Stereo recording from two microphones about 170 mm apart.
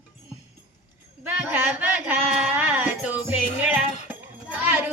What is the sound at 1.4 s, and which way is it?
Music, 10° right (ahead or behind).